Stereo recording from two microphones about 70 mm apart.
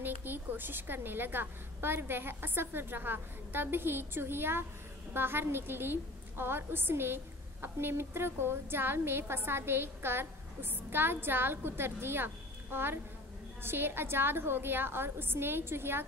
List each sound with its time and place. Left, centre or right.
0.0 s a woman's voice: right